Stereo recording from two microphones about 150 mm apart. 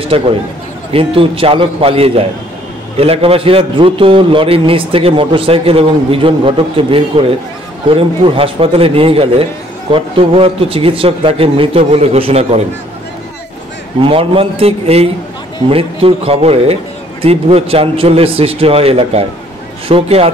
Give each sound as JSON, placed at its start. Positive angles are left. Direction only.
{"t": 0.1, "sound": "a man's voice", "side_deg": -35}
{"t": 14.0, "sound": "a man's voice", "side_deg": -40}